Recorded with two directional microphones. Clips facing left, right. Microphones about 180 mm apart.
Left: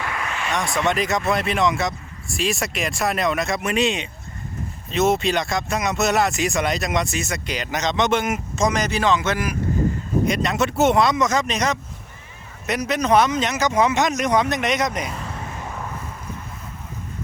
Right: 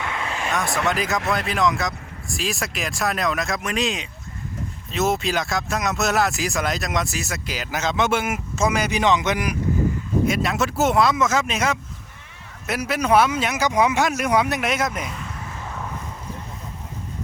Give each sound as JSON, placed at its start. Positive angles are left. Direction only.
{"t": 0.0, "sound": "a sound", "side_deg": -25}
{"t": 0.5, "sound": "speech", "side_deg": 0}
{"t": 10.2, "sound": "speech", "side_deg": -5}